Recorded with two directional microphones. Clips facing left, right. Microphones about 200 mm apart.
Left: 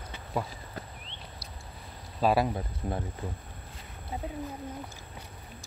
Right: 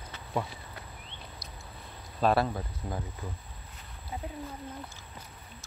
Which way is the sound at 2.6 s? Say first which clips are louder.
Left 3 dB; 30° left (ahead or behind).